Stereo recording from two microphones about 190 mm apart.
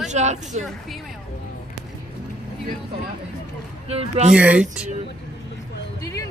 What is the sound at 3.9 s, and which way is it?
Speech, 30° right (ahead or behind).